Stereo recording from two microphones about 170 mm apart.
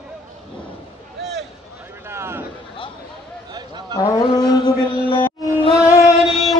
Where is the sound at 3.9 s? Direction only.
25° left (ahead or behind).